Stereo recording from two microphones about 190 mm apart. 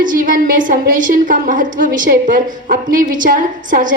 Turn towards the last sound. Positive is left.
turn(degrees=-45)  # may be behind; listen again after turning